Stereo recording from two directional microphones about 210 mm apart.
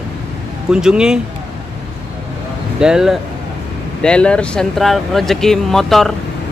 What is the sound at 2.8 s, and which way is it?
Speech, 5° right (ahead or behind).